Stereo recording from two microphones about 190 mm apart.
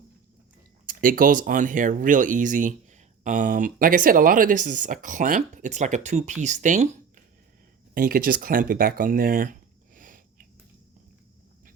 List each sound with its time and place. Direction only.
0.9 s speech: 45° right (ahead or behind)
7.9 s speech: 50° right (ahead or behind)